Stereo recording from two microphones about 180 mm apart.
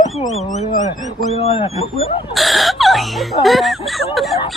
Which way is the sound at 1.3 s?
35° left (ahead or behind).